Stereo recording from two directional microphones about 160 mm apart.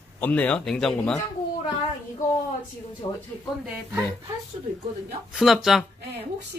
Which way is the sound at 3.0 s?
25° left (ahead or behind).